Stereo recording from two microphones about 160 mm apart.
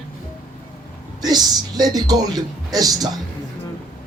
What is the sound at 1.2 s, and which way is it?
Speech, 25° right (ahead or behind).